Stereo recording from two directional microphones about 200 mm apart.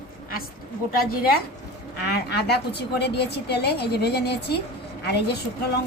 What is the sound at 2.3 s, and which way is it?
A woman's voice, 55° left (ahead or behind).